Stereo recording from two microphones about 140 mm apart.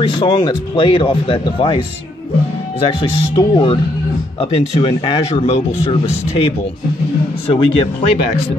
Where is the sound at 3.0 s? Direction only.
40° left (ahead or behind).